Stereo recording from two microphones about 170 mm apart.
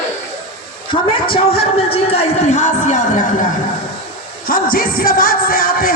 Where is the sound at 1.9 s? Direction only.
40° left (ahead or behind).